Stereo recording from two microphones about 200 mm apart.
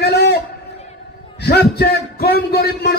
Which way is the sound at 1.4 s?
50° left (ahead or behind).